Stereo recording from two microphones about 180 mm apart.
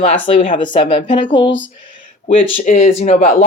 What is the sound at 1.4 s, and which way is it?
Speech, 90° left.